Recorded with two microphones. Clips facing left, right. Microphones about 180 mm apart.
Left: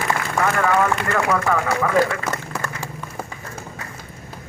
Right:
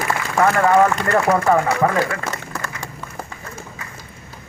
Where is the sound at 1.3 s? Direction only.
35° right (ahead or behind).